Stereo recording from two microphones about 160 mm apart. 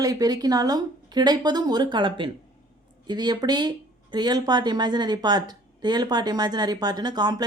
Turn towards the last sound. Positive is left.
turn(degrees=-25)  # may be behind; listen again after turning